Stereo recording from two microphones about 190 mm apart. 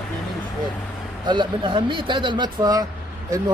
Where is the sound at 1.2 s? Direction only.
25° right (ahead or behind).